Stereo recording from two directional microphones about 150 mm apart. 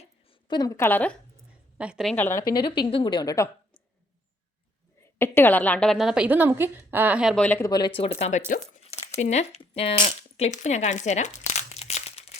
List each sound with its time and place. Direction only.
0.0 s a sound: 30° left (ahead or behind); by 1.1 s 10° left (ahead or behind)
1.8 s a woman's voice: 5° right (ahead or behind)
2.1 s speech: 15° left (ahead or behind)
2.6 s a woman's voice: 30° left (ahead or behind)
5.1 s a woman's voice: 15° left (ahead or behind); by 7.3 s 5° right (ahead or behind)
7.3 s speech: 10° left (ahead or behind)
7.6 s speech: 30° left (ahead or behind)
10.3 s crumpling: 50° left (ahead or behind)